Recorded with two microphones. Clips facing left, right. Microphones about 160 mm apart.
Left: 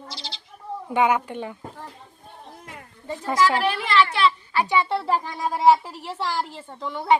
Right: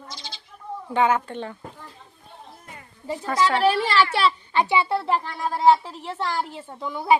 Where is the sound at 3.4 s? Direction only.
35° right (ahead or behind).